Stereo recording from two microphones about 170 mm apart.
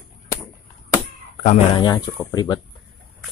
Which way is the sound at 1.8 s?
25° left (ahead or behind).